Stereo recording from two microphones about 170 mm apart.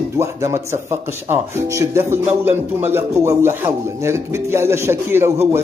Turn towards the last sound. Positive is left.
turn(degrees=-15)  # may be behind; listen again after turning